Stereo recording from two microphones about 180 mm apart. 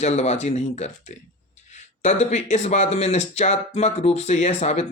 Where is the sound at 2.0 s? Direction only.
40° left (ahead or behind).